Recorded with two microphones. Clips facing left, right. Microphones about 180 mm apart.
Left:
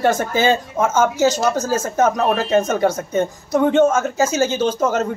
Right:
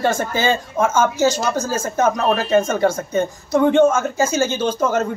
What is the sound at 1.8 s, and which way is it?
Speech, centre (ahead or behind).